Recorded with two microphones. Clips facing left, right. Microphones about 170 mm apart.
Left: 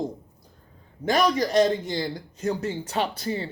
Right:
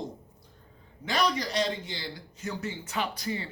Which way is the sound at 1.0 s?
45° left (ahead or behind).